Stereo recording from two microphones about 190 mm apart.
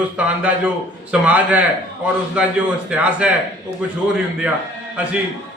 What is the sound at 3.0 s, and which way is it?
Speech, 5° right (ahead or behind).